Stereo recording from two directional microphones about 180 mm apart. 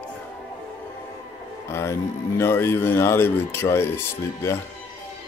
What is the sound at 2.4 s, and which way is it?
Speech, 15° left (ahead or behind).